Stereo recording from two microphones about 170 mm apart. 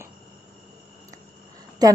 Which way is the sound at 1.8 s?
20° right (ahead or behind).